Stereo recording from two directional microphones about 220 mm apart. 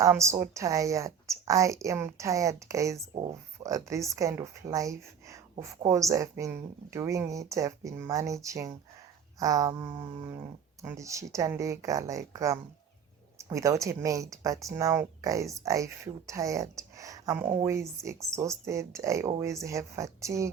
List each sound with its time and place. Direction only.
0.0 s speech: 15° right (ahead or behind)